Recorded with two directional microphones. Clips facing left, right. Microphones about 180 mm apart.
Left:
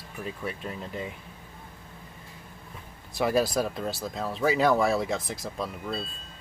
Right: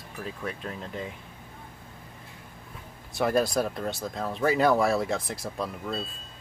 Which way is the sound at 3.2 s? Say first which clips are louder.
Even; centre (ahead or behind).